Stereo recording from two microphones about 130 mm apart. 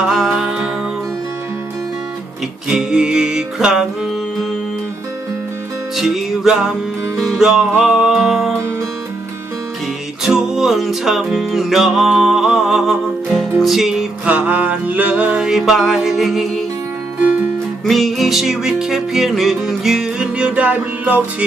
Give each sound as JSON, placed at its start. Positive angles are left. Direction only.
{"t": 0.0, "sound": "music", "side_deg": -5}
{"t": 2.6, "sound": "music", "side_deg": -5}
{"t": 6.0, "sound": "music", "side_deg": -5}
{"t": 10.2, "sound": "music", "side_deg": -5}
{"t": 17.8, "sound": "music", "side_deg": 0}